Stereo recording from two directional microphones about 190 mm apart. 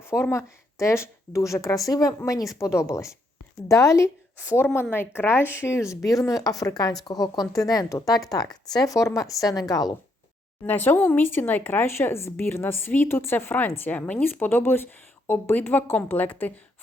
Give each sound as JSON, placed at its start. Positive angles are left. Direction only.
{"t": 0.0, "sound": "speech", "side_deg": 15}